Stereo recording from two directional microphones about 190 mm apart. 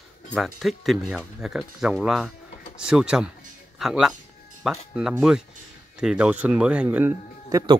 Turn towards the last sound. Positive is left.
turn(degrees=-15)  # may be behind; listen again after turning